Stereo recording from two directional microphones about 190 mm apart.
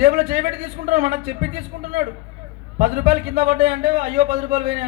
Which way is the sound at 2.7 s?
35° right (ahead or behind).